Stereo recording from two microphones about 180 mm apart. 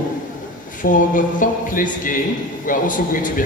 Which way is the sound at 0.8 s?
45° left (ahead or behind).